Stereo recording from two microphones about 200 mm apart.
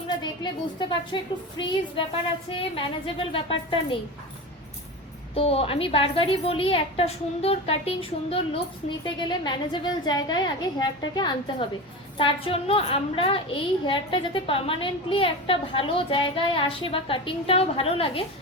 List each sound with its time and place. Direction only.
0.8 s a woman's voice: 25° left (ahead or behind)
5.3 s a woman's voice: 30° left (ahead or behind)